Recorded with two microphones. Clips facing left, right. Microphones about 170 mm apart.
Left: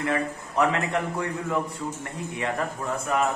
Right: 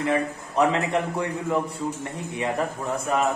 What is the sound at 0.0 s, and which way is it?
A man's voice, 20° right (ahead or behind).